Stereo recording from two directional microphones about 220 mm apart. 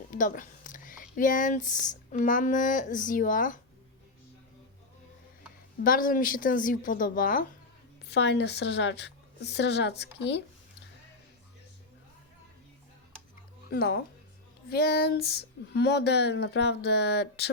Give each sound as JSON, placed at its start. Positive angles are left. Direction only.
{"t": 0.1, "sound": "speech", "side_deg": 35}
{"t": 5.8, "sound": "a woman's voice", "side_deg": 40}
{"t": 8.1, "sound": "speech", "side_deg": 50}
{"t": 13.7, "sound": "speech", "side_deg": 45}